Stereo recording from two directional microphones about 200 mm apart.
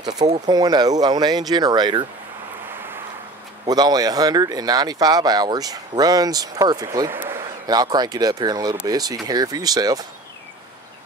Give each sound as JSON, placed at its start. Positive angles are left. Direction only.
{"t": 0.5, "sound": "speech", "side_deg": -20}
{"t": 3.6, "sound": "speech", "side_deg": -20}